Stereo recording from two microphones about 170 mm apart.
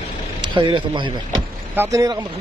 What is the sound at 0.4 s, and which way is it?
Speech, 30° right (ahead or behind).